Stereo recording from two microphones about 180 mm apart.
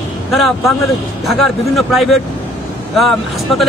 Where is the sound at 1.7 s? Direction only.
Centre (ahead or behind).